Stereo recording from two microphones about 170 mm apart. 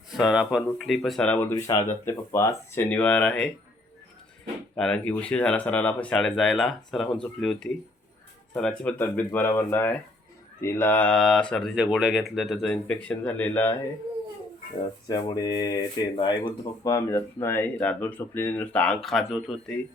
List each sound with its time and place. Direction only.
0.1 s speech: 5° right (ahead or behind)
4.7 s speech: 5° left (ahead or behind)
15.0 s speech: 25° left (ahead or behind); by 19.7 s centre (ahead or behind)